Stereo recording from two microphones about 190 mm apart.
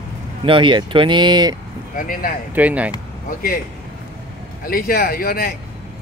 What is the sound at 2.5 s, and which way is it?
Speech, 10° right (ahead or behind).